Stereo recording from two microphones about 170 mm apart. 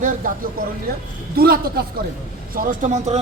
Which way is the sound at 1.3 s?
60° right (ahead or behind).